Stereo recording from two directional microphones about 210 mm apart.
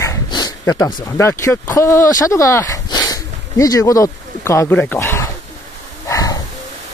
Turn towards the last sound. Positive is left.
turn(degrees=15)  # may be behind; listen again after turning